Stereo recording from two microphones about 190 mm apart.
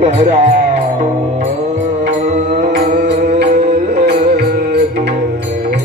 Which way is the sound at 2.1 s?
45° right (ahead or behind).